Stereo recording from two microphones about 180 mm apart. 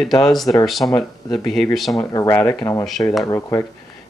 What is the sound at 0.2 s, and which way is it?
Speech, centre (ahead or behind).